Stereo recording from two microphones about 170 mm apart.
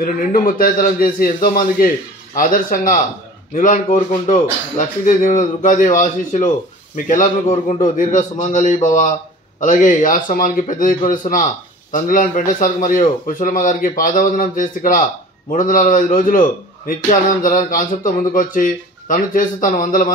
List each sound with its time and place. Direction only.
0.0 s a man's voice: 55° left (ahead or behind)